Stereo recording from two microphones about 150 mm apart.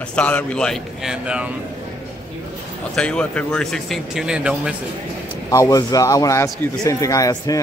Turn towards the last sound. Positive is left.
turn(degrees=25)  # may be behind; listen again after turning